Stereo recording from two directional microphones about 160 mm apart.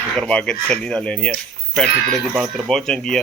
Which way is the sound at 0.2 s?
5° left (ahead or behind).